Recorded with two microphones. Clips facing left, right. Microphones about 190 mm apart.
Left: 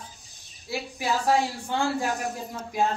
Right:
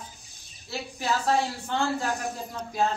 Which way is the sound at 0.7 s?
10° left (ahead or behind).